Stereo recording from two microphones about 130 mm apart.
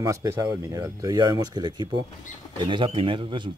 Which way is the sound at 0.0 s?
25° right (ahead or behind).